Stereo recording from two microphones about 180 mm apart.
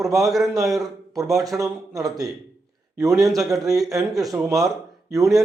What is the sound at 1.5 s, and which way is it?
Speech, 5° right (ahead or behind).